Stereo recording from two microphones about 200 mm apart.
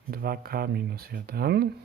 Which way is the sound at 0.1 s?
50° right (ahead or behind).